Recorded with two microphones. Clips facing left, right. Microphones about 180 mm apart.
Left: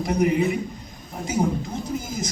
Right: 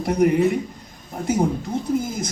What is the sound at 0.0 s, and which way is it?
Speech, 55° right (ahead or behind).